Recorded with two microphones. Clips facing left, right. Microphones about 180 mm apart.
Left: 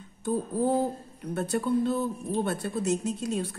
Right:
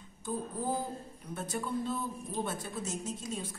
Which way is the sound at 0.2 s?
70° left (ahead or behind).